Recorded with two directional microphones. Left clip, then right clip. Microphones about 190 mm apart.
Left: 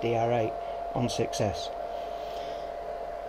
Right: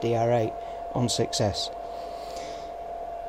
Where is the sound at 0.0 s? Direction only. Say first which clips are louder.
Right 2 dB; 25° right (ahead or behind).